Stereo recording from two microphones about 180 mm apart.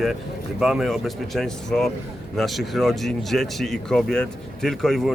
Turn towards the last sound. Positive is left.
turn(degrees=0)  # may be behind; listen again after turning